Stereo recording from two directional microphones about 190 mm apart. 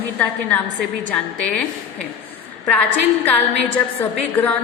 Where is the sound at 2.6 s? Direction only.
10° left (ahead or behind).